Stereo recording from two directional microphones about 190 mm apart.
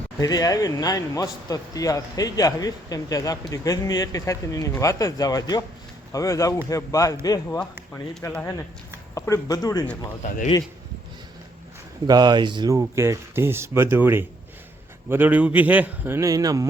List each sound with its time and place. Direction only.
0.2 s a man's voice: 20° left (ahead or behind)
12.0 s speech: 20° right (ahead or behind)